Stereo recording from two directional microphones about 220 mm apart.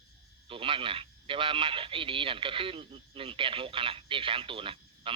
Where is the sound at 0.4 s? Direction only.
25° right (ahead or behind).